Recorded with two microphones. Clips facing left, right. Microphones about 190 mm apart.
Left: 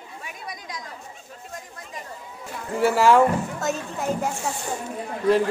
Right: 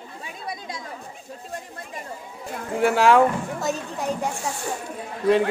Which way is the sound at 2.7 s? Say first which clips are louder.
Even; centre (ahead or behind).